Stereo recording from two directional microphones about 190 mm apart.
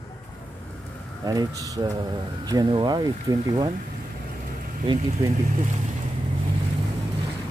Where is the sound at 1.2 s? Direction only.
20° right (ahead or behind).